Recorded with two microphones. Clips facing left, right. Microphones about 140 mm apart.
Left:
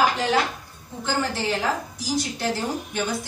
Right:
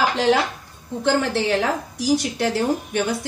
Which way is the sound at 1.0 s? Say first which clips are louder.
Right 5 dB; 65° right (ahead or behind).